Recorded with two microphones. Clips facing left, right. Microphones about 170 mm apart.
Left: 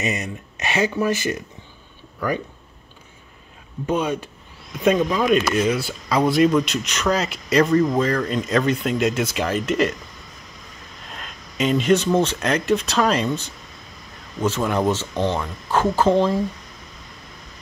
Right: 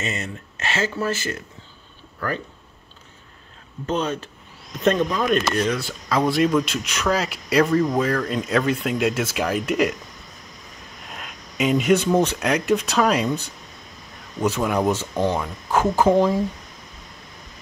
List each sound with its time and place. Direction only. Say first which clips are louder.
0.0 s speech: left 3 dB; 15° left (ahead or behind)
3.8 s speech: left 2 dB; 10° left (ahead or behind); by 9.9 s 10° right (ahead or behind)
11.1 s speech: even; 10° right (ahead or behind)